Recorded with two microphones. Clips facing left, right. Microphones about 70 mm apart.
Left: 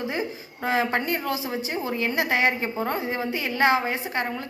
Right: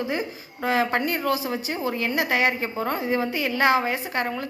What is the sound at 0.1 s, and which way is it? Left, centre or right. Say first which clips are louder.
A woman's voice: right 1 dB; left.